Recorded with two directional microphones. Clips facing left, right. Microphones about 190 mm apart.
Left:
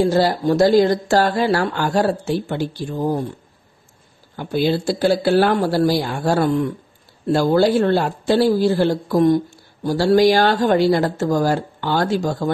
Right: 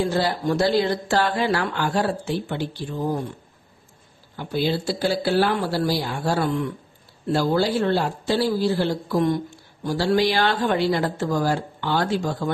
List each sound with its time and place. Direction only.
0.0 s speech: 40° left (ahead or behind)
4.4 s speech: 50° left (ahead or behind)